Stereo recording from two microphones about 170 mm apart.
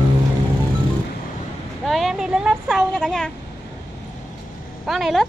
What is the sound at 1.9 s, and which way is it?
Vehicle, centre (ahead or behind).